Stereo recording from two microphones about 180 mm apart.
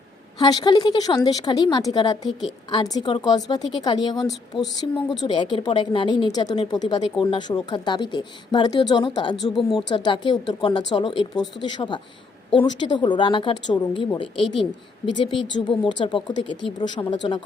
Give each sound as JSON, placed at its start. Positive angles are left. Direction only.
{"t": 0.3, "sound": "speech", "side_deg": 20}